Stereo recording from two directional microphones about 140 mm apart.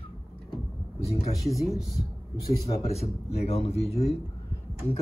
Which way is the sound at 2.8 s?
50° left (ahead or behind).